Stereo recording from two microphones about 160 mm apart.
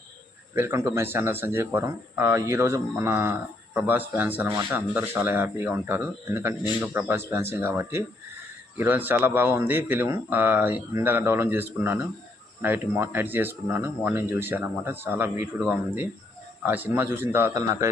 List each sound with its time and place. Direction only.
0.5 s speech: 15° right (ahead or behind)